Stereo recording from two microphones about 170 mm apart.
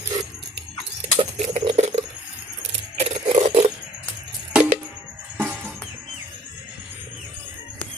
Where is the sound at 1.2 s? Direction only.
35° right (ahead or behind).